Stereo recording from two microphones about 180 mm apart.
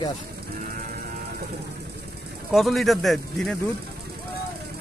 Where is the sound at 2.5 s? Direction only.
Centre (ahead or behind).